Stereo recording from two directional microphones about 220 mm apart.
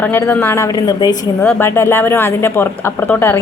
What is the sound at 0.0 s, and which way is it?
A woman's voice, 10° left (ahead or behind).